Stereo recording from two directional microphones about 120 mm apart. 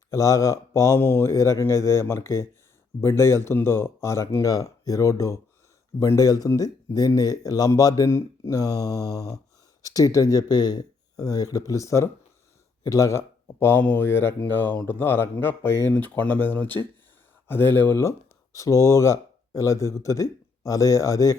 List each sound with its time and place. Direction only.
0.1 s speech: 25° left (ahead or behind)